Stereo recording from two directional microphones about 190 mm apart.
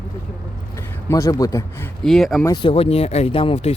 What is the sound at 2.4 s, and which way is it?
Speech, 25° left (ahead or behind).